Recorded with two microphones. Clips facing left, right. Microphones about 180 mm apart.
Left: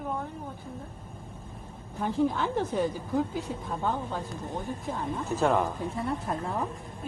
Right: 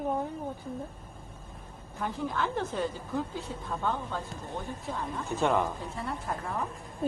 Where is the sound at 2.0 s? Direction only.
15° left (ahead or behind).